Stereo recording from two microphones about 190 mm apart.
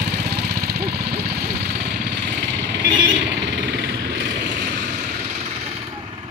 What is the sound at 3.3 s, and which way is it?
Vehicle, 65° right (ahead or behind).